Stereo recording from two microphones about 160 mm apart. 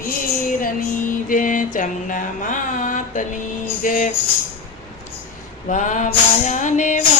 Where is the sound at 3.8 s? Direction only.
55° left (ahead or behind).